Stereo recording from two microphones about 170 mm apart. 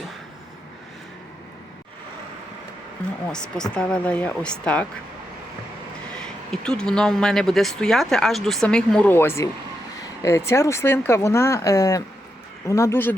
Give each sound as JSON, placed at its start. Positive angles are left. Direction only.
{"t": 3.2, "sound": "speech", "side_deg": 5}
{"t": 6.1, "sound": "speech", "side_deg": 5}